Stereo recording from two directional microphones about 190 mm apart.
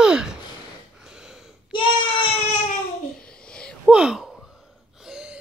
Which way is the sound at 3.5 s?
Centre (ahead or behind).